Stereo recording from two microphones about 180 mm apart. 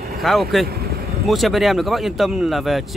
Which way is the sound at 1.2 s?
Centre (ahead or behind).